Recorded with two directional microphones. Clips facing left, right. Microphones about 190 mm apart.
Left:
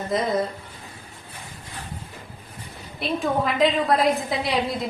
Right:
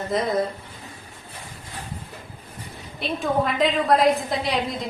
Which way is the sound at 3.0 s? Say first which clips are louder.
Even; centre (ahead or behind).